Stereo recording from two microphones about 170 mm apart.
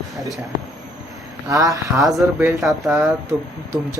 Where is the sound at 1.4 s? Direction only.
20° right (ahead or behind).